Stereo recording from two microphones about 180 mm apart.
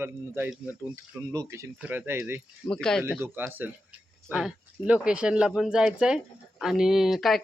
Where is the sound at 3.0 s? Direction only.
10° right (ahead or behind).